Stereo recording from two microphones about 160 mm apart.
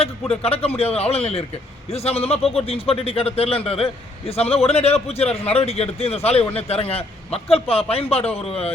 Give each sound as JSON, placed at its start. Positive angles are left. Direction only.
{"t": 0.0, "sound": "a man's voice", "side_deg": 40}